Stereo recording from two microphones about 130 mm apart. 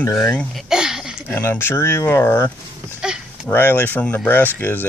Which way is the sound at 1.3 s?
15° left (ahead or behind).